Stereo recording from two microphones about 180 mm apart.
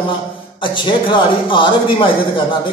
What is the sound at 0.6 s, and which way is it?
A man's voice, 25° left (ahead or behind).